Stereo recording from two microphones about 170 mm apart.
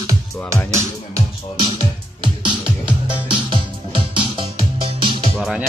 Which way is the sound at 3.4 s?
30° right (ahead or behind).